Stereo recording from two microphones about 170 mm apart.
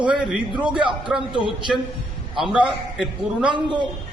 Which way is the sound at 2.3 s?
5° right (ahead or behind).